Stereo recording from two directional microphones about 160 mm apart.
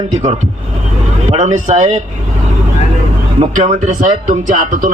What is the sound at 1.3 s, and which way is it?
Speech, 50° right (ahead or behind).